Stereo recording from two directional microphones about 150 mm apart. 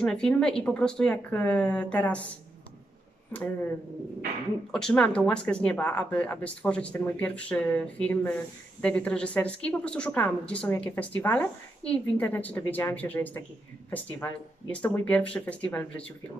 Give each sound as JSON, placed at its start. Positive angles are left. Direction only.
{"t": 0.0, "sound": "a woman's voice", "side_deg": 5}
{"t": 4.7, "sound": "a woman's voice", "side_deg": 5}